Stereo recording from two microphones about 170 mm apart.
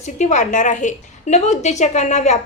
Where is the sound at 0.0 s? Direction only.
45° left (ahead or behind).